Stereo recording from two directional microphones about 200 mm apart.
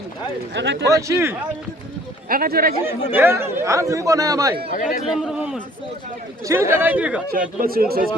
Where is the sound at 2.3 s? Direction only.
45° right (ahead or behind).